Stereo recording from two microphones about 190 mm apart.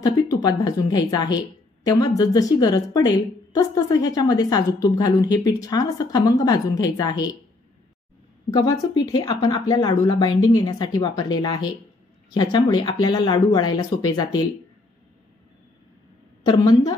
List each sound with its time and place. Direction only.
0.0 s a woman's voice: 20° left (ahead or behind)
8.5 s a woman's voice: 15° left (ahead or behind)
16.4 s a woman's voice: 20° left (ahead or behind)